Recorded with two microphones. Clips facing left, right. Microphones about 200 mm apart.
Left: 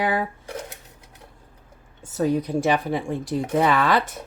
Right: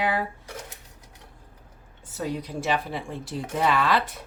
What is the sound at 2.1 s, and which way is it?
A woman's voice, 45° left (ahead or behind).